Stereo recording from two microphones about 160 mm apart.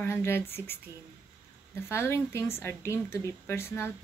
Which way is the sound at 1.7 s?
15° left (ahead or behind).